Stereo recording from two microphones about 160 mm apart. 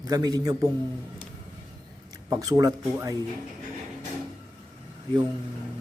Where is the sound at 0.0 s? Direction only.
25° right (ahead or behind).